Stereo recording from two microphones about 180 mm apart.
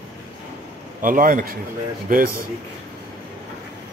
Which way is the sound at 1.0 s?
50° right (ahead or behind).